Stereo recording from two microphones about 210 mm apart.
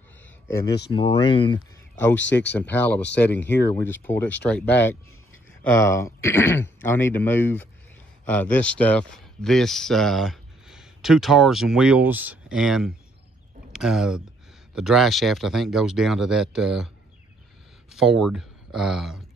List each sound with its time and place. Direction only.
0.5 s speech: 15° left (ahead or behind)
2.0 s speech: 10° left (ahead or behind)
17.9 s speech: centre (ahead or behind)